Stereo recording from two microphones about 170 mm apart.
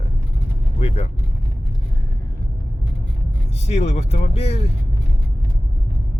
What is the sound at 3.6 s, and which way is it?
Speech, 40° left (ahead or behind).